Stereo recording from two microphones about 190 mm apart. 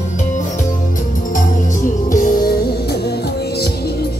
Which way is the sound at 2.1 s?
45° left (ahead or behind).